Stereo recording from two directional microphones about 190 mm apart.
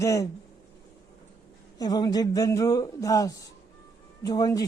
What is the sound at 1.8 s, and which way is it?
A man's voice, 20° left (ahead or behind).